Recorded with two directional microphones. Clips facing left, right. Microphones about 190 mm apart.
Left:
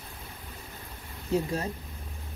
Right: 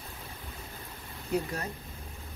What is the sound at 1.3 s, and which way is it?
Speech, 25° left (ahead or behind).